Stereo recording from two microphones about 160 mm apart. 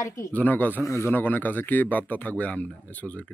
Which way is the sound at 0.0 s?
20° left (ahead or behind).